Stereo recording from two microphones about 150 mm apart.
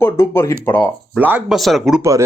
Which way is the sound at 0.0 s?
20° left (ahead or behind).